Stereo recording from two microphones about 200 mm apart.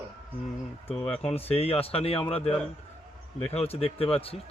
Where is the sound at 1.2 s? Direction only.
30° left (ahead or behind).